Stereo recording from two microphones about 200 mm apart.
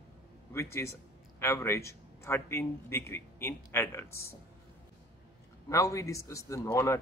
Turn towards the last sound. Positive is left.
turn(degrees=15)  # may be behind; listen again after turning